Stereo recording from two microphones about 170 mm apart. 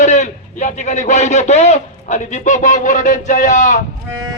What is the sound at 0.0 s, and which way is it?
A man's voice, 45° left (ahead or behind).